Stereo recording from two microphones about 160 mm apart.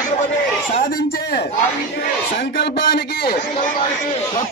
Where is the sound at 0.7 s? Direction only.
60° left (ahead or behind).